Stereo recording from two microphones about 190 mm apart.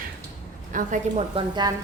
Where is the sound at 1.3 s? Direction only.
20° right (ahead or behind).